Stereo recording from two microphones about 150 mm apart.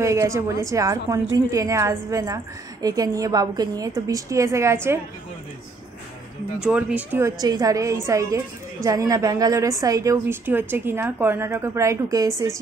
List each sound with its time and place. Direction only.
0.0 s a woman's voice: 20° right (ahead or behind)
6.6 s a woman's voice: 5° right (ahead or behind)